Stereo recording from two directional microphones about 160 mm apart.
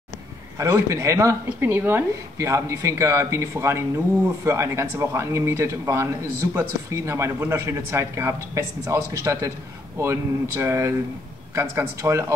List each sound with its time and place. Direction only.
0.6 s a woman's voice: 20° right (ahead or behind)